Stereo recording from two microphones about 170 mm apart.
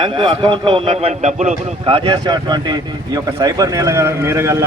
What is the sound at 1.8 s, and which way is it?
Speech, 30° right (ahead or behind).